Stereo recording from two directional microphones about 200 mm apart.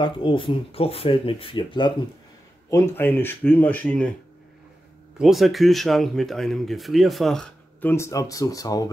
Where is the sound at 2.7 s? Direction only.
10° left (ahead or behind).